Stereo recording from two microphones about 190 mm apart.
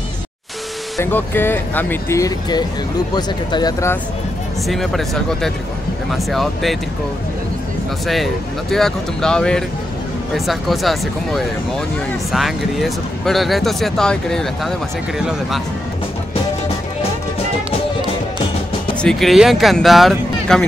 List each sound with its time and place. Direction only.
0.9 s speech: 10° left (ahead or behind)
4.6 s speech: centre (ahead or behind)
8.1 s speech: centre (ahead or behind)
18.9 s speech: centre (ahead or behind)